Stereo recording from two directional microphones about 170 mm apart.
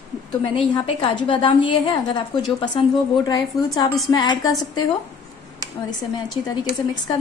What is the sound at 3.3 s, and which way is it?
A woman's voice, 20° left (ahead or behind).